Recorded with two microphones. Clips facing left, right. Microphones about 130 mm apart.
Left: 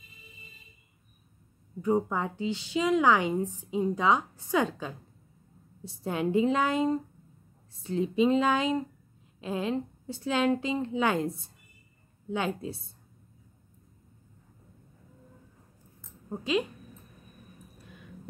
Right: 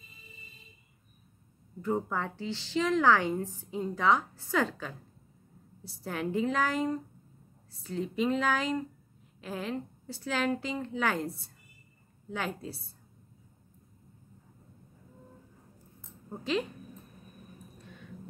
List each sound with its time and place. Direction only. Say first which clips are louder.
1.8 s a woman's voice: left 4 dB; 15° left (ahead or behind)
12.3 s a woman's voice: left 5 dB; 20° left (ahead or behind)
16.3 s a woman's voice: left 3 dB; 15° left (ahead or behind)